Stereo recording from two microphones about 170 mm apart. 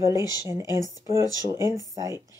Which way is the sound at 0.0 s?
15° right (ahead or behind).